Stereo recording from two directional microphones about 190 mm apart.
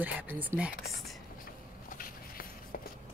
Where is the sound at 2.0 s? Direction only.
50° left (ahead or behind).